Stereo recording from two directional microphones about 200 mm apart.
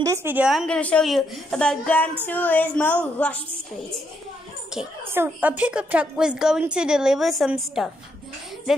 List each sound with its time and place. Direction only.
0.0 s a woman's voice: 15° right (ahead or behind); by 3.4 s 5° left (ahead or behind)
4.7 s a woman's voice: 10° right (ahead or behind)